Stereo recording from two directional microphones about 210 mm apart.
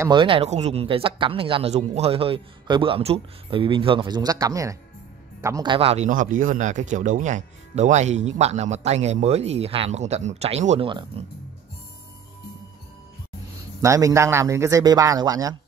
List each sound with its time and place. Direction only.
0.0 s speech: 20° right (ahead or behind)
13.7 s a man's voice: 15° right (ahead or behind)